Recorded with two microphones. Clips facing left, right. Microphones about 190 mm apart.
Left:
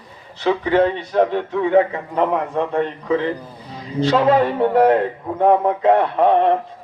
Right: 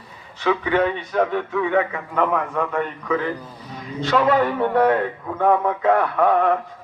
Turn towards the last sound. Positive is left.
turn(degrees=25)  # may be behind; listen again after turning